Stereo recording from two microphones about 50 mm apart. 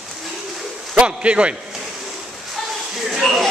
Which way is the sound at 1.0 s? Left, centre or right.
Right.